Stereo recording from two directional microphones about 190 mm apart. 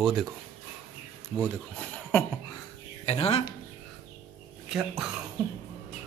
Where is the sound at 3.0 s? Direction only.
30° left (ahead or behind).